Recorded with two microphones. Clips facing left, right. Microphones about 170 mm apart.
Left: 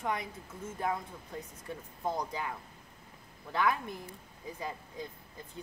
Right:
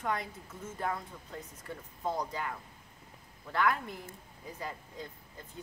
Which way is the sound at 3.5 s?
15° left (ahead or behind).